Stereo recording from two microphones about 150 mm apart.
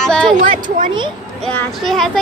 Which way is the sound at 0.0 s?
5° left (ahead or behind).